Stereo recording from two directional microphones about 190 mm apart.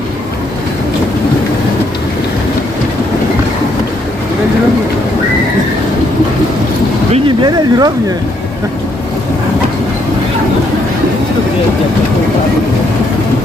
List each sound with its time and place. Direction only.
7.1 s speech: 25° right (ahead or behind)